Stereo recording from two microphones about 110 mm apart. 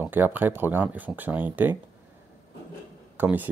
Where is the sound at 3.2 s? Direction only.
15° right (ahead or behind).